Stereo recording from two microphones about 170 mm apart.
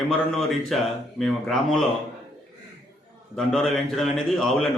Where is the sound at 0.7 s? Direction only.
Centre (ahead or behind).